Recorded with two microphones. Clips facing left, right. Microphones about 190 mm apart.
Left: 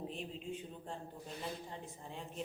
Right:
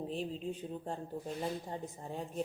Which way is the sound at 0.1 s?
35° right (ahead or behind).